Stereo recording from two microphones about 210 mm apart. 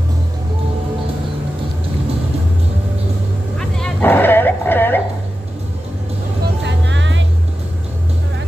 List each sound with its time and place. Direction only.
3.5 s dog: 5° left (ahead or behind)
6.6 s music: 60° right (ahead or behind)